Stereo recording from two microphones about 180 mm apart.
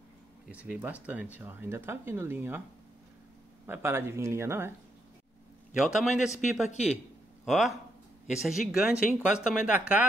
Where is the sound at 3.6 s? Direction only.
15° right (ahead or behind).